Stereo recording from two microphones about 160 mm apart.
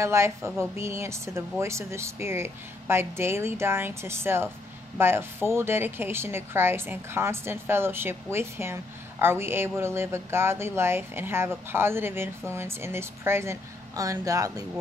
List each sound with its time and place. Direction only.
0.0 s speech: 15° right (ahead or behind)